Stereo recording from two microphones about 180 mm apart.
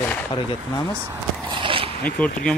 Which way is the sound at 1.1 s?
25° right (ahead or behind).